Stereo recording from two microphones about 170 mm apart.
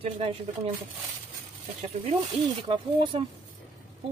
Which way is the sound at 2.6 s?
30° right (ahead or behind).